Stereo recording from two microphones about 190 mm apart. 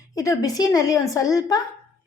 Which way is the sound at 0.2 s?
20° left (ahead or behind).